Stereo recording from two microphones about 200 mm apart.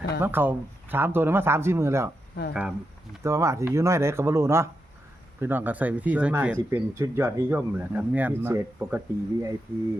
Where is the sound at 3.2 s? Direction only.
15° right (ahead or behind).